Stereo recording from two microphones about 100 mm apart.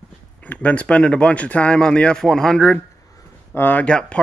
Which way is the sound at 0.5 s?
15° left (ahead or behind).